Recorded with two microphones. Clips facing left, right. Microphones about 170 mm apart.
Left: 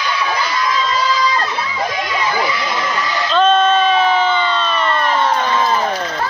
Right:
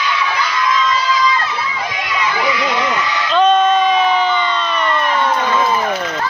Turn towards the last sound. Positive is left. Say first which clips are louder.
# even
turn(degrees=-15)  # may be behind; listen again after turning